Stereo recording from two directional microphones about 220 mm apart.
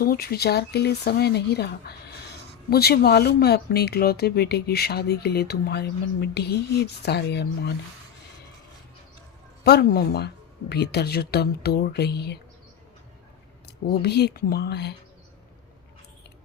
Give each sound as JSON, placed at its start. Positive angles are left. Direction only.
{"t": 0.0, "sound": "speech", "side_deg": 45}
{"t": 9.6, "sound": "speech", "side_deg": 45}
{"t": 13.7, "sound": "speech", "side_deg": 45}